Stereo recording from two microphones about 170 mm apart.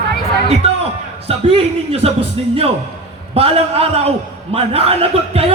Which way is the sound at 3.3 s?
35° right (ahead or behind).